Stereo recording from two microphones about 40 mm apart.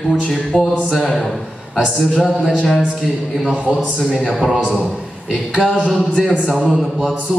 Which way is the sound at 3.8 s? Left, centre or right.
Centre.